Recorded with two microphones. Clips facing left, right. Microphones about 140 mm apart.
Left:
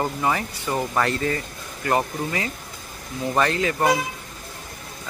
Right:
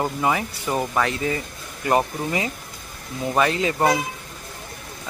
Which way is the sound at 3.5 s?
20° right (ahead or behind).